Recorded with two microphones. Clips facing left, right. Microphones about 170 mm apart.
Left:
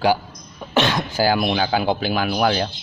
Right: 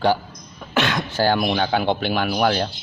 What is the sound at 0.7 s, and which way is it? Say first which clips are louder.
Cough: left 2 dB; 25° left (ahead or behind).